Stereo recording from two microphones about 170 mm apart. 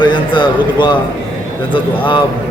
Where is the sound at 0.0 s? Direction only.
30° left (ahead or behind).